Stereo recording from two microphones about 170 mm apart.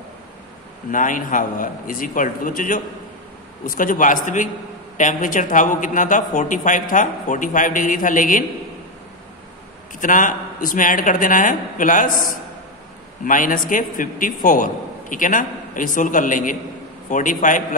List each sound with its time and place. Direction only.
0.9 s a man's voice: 50° left (ahead or behind)
9.9 s a man's voice: 50° left (ahead or behind)
13.2 s a man's voice: 50° left (ahead or behind)